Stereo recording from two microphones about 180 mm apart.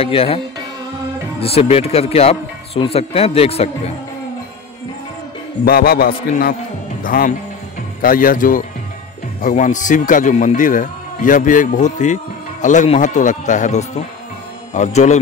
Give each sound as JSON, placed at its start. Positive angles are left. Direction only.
{"t": 0.0, "sound": "a man's voice", "side_deg": 30}
{"t": 1.4, "sound": "a man's voice", "side_deg": 35}
{"t": 5.7, "sound": "a man's voice", "side_deg": 60}